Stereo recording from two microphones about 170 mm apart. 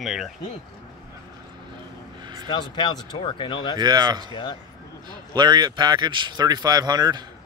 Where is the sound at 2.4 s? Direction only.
25° left (ahead or behind).